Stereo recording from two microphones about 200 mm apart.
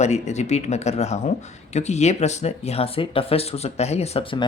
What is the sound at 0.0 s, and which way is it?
Speech, 35° left (ahead or behind).